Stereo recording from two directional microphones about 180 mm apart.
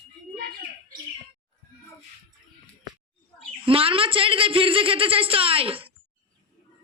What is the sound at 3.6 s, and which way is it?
A man's voice, 30° right (ahead or behind).